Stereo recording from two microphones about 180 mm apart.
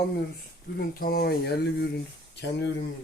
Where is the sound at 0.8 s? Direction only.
55° left (ahead or behind).